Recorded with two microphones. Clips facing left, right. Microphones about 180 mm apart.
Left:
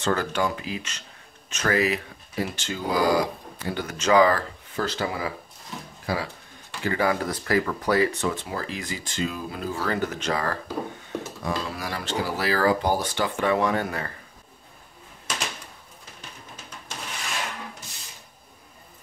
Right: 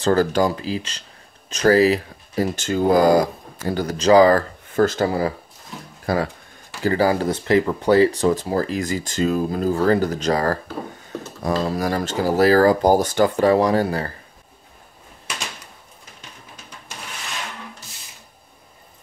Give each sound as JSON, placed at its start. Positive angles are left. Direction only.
{"t": 0.0, "sound": "speech", "side_deg": -35}
{"t": 6.8, "sound": "speech", "side_deg": -35}